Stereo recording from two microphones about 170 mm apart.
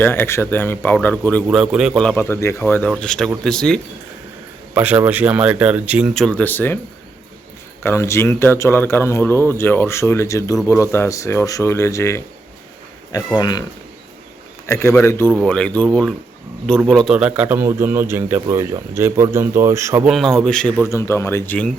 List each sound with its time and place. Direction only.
0.0 s speech: 10° left (ahead or behind)
1.5 s speech: 5° right (ahead or behind)
2.0 s speech: 15° left (ahead or behind)
4.7 s a man's voice: 10° right (ahead or behind); by 6.7 s 10° left (ahead or behind)
7.9 s speech: 15° left (ahead or behind)
14.7 s a man's voice: 15° left (ahead or behind); by 20.1 s 15° right (ahead or behind)
20.1 s speech: centre (ahead or behind)
20.8 s speech: 15° left (ahead or behind)